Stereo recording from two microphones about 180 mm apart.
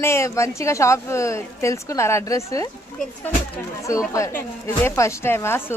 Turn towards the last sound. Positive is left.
turn(degrees=15)  # may be behind; listen again after turning